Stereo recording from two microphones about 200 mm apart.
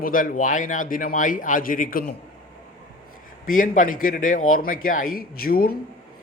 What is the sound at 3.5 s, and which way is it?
A man's voice, 40° left (ahead or behind).